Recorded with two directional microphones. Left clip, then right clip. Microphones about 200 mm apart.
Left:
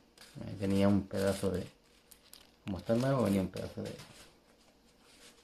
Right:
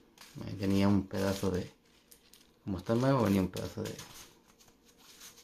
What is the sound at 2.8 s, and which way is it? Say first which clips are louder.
Speech: right 2 dB; 30° right (ahead or behind).